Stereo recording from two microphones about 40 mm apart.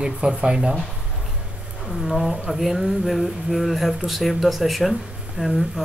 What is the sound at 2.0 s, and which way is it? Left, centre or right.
Speech, centre.